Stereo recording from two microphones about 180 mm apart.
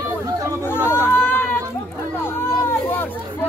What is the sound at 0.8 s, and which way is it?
Chatter, 15° left (ahead or behind).